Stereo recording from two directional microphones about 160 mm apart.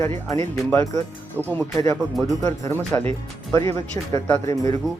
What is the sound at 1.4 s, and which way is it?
A man's voice, 10° left (ahead or behind).